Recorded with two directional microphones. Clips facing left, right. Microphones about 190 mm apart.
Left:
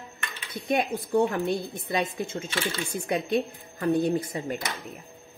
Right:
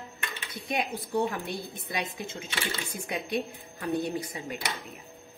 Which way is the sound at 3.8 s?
50° left (ahead or behind).